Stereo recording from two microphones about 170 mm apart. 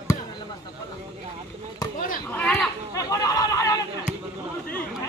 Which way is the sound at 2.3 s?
10° left (ahead or behind).